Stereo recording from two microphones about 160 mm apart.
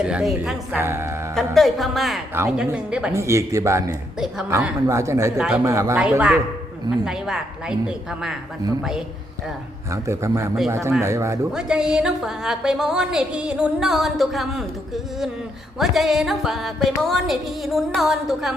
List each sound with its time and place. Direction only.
0.0 s a woman's voice: 5° right (ahead or behind)
1.4 s a woman's voice: centre (ahead or behind)
3.1 s a woman's voice: 20° right (ahead or behind)
5.4 s a woman's voice: 5° right (ahead or behind)
5.6 s speech: 20° right (ahead or behind)
6.0 s a woman's voice: 5° right (ahead or behind)
9.9 s a woman's voice: 20° right (ahead or behind)
11.5 s a woman's voice: 5° right (ahead or behind)